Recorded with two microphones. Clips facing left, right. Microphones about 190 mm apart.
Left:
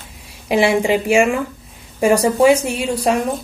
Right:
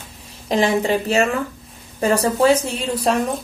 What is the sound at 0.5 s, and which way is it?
Speech, 10° left (ahead or behind).